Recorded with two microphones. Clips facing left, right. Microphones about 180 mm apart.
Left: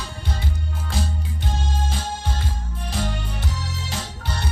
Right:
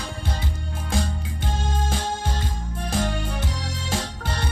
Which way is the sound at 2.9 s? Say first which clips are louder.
Right 3 dB; 50° right (ahead or behind).